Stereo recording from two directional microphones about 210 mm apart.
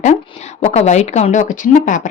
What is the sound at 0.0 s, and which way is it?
A woman's voice, 30° left (ahead or behind).